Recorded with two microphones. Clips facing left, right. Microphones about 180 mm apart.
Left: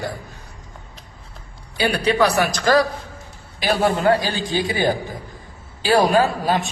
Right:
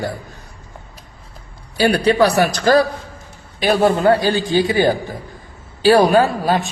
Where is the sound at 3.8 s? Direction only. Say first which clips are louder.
Right 3 dB; 35° right (ahead or behind).